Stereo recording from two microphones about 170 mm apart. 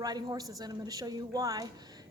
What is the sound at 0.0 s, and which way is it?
A woman's voice, 25° right (ahead or behind).